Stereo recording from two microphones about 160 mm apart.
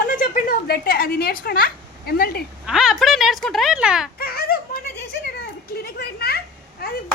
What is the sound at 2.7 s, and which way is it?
Speech, 5° right (ahead or behind).